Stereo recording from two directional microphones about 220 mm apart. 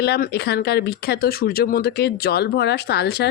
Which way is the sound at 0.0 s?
45° left (ahead or behind).